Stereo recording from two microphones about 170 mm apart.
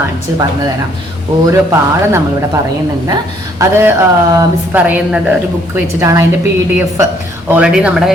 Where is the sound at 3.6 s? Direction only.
20° right (ahead or behind).